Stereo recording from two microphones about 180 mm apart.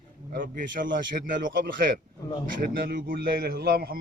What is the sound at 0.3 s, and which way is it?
Speech, 50° right (ahead or behind).